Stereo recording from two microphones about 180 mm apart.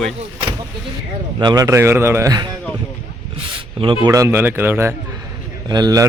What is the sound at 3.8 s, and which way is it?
A man's voice, 25° right (ahead or behind).